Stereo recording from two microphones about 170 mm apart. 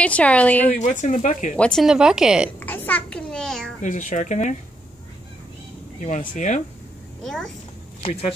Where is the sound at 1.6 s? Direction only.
Centre (ahead or behind).